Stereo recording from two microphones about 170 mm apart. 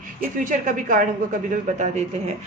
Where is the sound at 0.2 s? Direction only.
50° right (ahead or behind).